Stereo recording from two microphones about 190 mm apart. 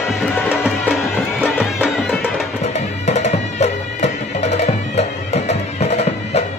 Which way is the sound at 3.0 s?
35° left (ahead or behind).